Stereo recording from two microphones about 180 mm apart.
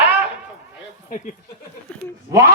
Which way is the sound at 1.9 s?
5° left (ahead or behind).